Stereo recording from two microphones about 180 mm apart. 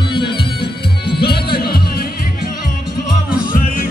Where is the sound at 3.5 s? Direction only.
50° left (ahead or behind).